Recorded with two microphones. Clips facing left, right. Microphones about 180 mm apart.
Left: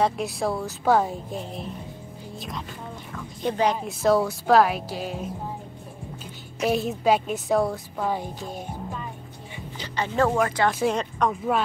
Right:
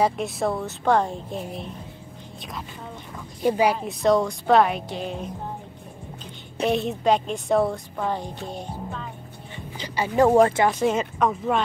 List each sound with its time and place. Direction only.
0.0 s a woman's voice: centre (ahead or behind)
3.4 s a woman's voice: 10° right (ahead or behind)
4.0 s a woman's voice: 5° left (ahead or behind)
6.6 s a woman's voice: centre (ahead or behind)
9.9 s a woman's voice: 10° right (ahead or behind)
10.3 s speech: 30° right (ahead or behind)
10.8 s a woman's voice: centre (ahead or behind)